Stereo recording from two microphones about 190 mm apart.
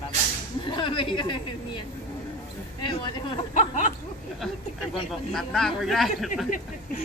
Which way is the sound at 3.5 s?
40° left (ahead or behind).